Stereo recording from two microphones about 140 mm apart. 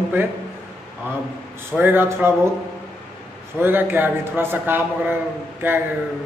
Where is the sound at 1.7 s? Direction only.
15° right (ahead or behind).